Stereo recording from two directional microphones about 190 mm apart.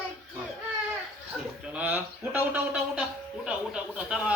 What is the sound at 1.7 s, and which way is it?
A man's voice, 10° right (ahead or behind).